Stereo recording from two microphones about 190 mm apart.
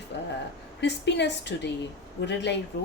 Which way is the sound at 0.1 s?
60° left (ahead or behind).